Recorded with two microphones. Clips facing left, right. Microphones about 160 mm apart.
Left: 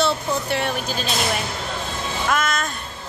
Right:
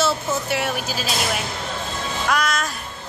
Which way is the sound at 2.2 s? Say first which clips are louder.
Even; centre (ahead or behind).